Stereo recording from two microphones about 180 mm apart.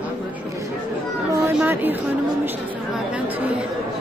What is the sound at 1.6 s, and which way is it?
Speech, 10° right (ahead or behind).